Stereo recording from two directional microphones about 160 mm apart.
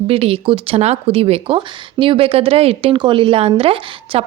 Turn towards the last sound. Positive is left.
turn(degrees=-35)  # may be behind; listen again after turning